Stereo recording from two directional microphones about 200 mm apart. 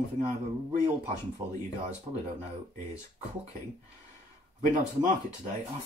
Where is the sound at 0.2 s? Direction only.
35° right (ahead or behind).